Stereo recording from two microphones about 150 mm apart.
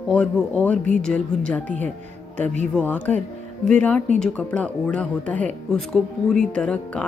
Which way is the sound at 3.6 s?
10° left (ahead or behind).